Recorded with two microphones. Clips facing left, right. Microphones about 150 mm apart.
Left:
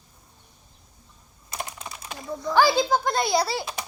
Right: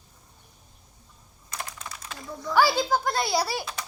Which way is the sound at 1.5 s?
20° left (ahead or behind).